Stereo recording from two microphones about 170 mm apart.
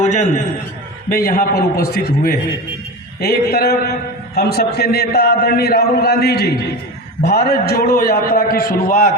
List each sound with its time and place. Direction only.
0.0 s a man's voice: 45° left (ahead or behind)
1.1 s a man's voice: 60° left (ahead or behind)